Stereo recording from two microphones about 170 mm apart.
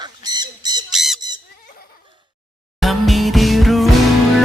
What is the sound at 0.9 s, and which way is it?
Speech, centre (ahead or behind).